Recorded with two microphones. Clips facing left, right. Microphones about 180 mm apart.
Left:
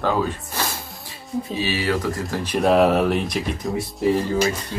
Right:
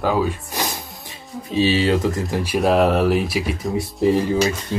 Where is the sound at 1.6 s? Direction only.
25° right (ahead or behind).